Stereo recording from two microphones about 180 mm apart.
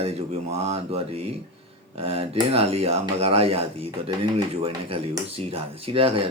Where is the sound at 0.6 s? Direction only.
35° right (ahead or behind).